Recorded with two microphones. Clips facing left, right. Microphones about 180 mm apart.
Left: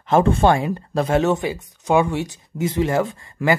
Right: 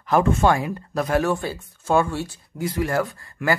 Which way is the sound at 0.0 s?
25° left (ahead or behind).